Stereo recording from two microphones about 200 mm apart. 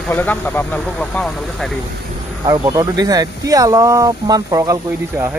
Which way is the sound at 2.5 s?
20° right (ahead or behind).